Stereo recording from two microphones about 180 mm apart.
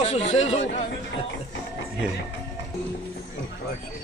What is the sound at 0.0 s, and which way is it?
Speech, 35° left (ahead or behind).